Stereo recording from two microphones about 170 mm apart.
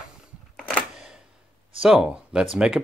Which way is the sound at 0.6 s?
5° left (ahead or behind).